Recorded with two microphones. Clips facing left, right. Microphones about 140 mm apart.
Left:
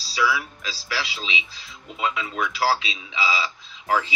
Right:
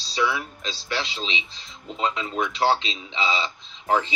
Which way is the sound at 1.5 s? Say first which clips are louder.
Right 3 dB; 30° right (ahead or behind).